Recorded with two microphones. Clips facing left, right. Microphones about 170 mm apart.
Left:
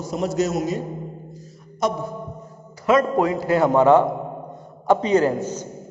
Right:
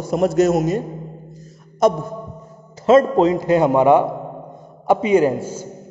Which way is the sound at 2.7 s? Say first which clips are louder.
Right 5 dB; 25° right (ahead or behind).